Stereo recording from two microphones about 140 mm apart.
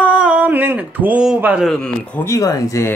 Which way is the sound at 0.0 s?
10° right (ahead or behind).